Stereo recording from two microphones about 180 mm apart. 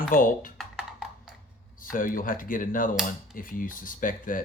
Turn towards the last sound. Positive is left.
turn(degrees=50)  # may be behind; listen again after turning